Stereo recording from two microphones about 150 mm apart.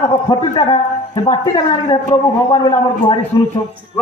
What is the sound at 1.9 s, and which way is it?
A man's voice, 30° left (ahead or behind).